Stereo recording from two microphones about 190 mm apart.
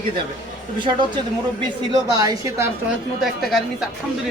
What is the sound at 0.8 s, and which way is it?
A woman's voice, 25° right (ahead or behind).